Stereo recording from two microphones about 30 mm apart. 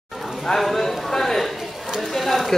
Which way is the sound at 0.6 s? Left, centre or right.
Centre.